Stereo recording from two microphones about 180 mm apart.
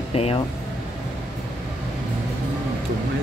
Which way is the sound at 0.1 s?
35° left (ahead or behind).